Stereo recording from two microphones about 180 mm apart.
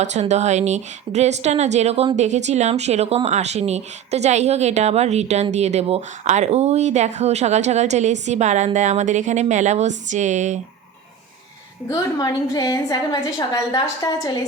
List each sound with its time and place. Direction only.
0.0 s a woman's voice: 40° right (ahead or behind)
11.9 s a woman's voice: 20° left (ahead or behind)